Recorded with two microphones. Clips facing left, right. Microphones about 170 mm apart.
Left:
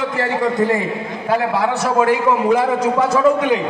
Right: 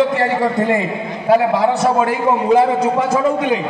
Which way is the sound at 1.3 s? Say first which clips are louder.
Right 4 dB; 25° right (ahead or behind).